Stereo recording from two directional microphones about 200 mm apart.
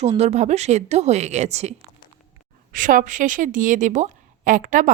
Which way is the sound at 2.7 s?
40° right (ahead or behind).